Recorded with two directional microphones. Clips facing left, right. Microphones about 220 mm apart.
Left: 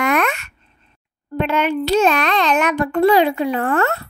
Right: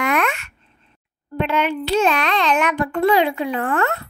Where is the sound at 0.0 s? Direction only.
40° left (ahead or behind).